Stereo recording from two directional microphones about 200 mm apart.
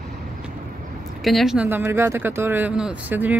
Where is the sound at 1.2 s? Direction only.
Centre (ahead or behind).